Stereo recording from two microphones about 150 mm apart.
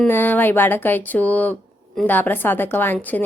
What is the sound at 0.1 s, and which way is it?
A woman's voice, 15° left (ahead or behind).